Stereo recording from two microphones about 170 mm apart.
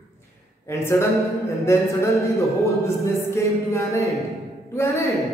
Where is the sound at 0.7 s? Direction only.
15° left (ahead or behind).